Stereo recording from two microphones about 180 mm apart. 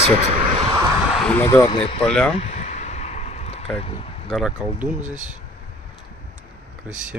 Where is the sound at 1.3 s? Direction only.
15° left (ahead or behind).